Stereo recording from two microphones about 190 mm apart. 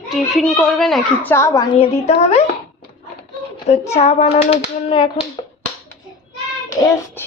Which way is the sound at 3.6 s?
35° left (ahead or behind).